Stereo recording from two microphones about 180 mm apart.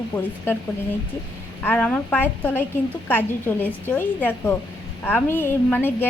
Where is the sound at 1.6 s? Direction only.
10° left (ahead or behind).